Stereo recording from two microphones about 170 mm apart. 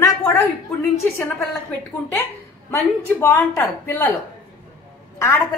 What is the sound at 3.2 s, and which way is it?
Speech, 10° left (ahead or behind).